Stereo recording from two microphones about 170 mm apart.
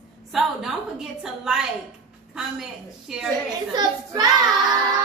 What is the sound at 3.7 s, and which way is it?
Speech, 20° right (ahead or behind).